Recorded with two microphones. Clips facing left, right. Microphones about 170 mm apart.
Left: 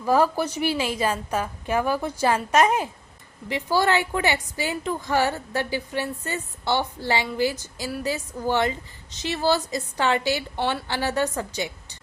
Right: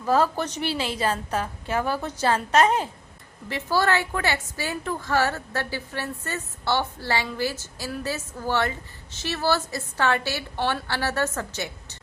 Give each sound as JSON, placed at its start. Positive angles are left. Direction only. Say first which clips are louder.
{"t": 0.0, "sound": "a woman's voice", "louder": "left 2 dB", "side_deg": 10}